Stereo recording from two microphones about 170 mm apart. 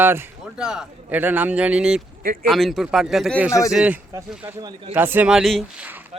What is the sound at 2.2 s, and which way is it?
Speech, 55° right (ahead or behind).